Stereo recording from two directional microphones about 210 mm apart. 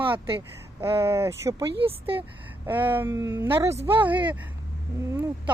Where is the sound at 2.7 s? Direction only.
10° right (ahead or behind).